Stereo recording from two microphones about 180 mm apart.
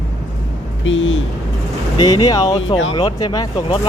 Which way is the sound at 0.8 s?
90° left.